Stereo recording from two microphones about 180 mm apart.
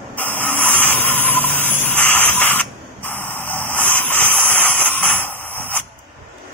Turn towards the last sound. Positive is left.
turn(degrees=10)  # may be behind; listen again after turning